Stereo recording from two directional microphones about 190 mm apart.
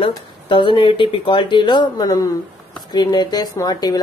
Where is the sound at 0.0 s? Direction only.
25° left (ahead or behind).